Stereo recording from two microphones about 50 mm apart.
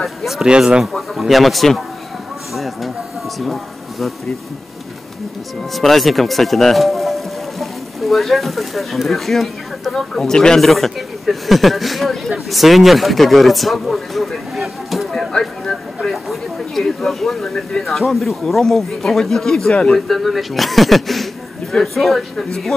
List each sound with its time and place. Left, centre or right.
0.0 s speech: centre
0.5 s speech: centre
0.9 s speech: centre
2.5 s a sound: centre
5.8 s speech: centre
15.0 s a sound: centre
17.8 s speech: centre
19.7 s speech: left
20.1 s speech: centre